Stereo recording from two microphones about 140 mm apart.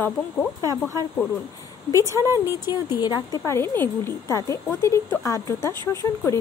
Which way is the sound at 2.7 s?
30° left (ahead or behind).